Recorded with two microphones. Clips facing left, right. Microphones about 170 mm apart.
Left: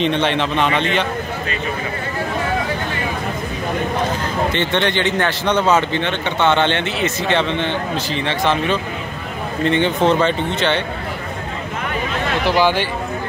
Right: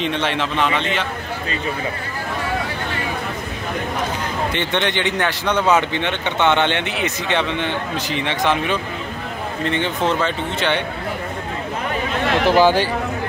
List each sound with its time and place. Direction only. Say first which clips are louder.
0.0 s speech: left 4 dB; 5° right (ahead or behind)
4.6 s speech: left 1 dB; 15° right (ahead or behind)
9.7 s speech: left 5 dB; centre (ahead or behind)
12.4 s speech: right 2 dB; 45° right (ahead or behind)